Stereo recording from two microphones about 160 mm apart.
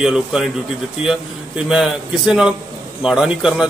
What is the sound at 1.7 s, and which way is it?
A man's voice, 5° right (ahead or behind).